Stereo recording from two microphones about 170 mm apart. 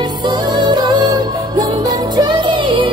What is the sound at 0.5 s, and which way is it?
Music, 25° right (ahead or behind).